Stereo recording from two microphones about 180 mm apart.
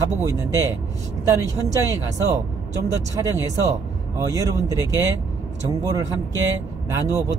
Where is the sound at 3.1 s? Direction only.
20° right (ahead or behind).